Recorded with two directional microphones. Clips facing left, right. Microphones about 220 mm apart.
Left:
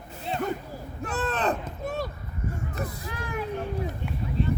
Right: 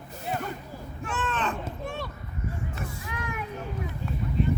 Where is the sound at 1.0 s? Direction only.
35° left (ahead or behind).